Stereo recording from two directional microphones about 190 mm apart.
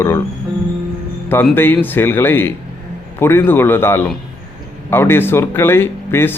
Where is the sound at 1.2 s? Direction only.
10° left (ahead or behind).